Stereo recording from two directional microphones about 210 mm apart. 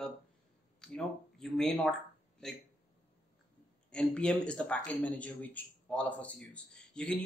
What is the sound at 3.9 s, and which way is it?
Speech, 5° left (ahead or behind).